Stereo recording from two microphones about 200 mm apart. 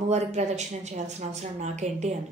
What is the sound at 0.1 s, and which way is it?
A woman's voice, 35° right (ahead or behind).